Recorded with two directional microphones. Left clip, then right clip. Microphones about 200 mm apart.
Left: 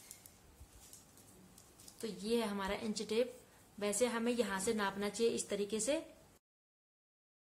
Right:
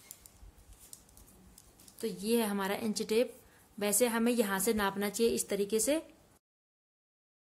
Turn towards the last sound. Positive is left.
turn(degrees=-50)  # may be behind; listen again after turning